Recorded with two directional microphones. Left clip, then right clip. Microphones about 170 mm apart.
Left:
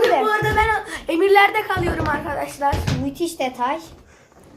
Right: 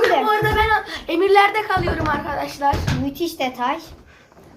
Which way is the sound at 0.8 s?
30° left (ahead or behind).